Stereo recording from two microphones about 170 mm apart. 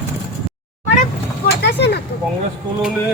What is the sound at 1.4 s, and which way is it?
Vehicle, 80° left.